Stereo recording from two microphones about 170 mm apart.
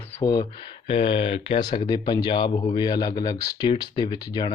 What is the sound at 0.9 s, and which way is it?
Speech, 30° left (ahead or behind).